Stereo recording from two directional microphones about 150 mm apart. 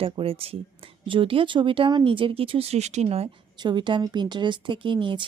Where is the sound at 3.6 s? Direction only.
30° right (ahead or behind).